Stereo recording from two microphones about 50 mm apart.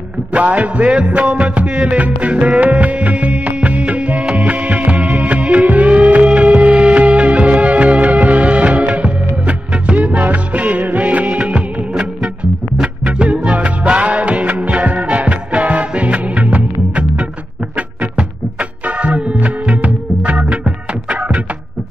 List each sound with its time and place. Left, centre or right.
0.3 s music: right